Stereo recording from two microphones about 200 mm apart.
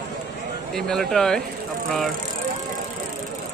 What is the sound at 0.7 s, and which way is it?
Speech, centre (ahead or behind).